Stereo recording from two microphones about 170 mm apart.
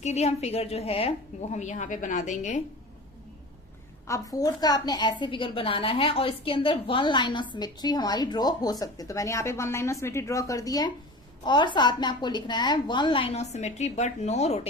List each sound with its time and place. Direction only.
0.0 s a woman's voice: 40° left (ahead or behind)
4.0 s a woman's voice: 20° left (ahead or behind); by 14.7 s 40° left (ahead or behind)